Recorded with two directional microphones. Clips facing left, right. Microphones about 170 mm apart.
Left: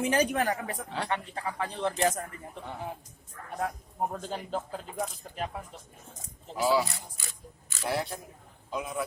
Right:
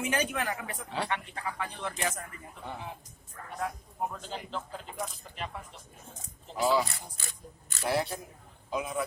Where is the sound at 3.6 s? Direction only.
45° left (ahead or behind).